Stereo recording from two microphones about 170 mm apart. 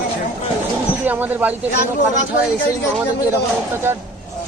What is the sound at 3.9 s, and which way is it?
Speech, 15° right (ahead or behind).